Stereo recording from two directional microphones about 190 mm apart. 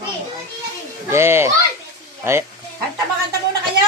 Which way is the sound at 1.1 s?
15° right (ahead or behind).